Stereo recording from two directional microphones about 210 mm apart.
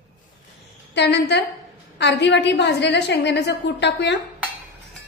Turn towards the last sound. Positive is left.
turn(degrees=55)  # may be behind; listen again after turning